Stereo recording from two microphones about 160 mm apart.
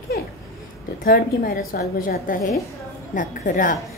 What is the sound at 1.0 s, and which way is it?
A woman's voice, 65° left (ahead or behind).